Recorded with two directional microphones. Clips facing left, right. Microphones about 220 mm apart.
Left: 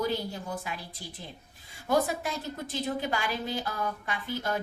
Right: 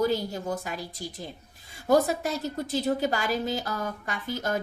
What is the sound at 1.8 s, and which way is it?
A woman's voice, 40° right (ahead or behind).